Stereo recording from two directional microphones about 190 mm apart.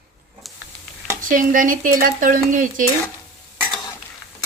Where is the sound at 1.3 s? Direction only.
45° right (ahead or behind).